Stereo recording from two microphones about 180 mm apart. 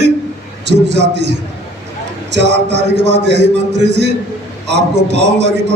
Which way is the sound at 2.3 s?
75° right (ahead or behind).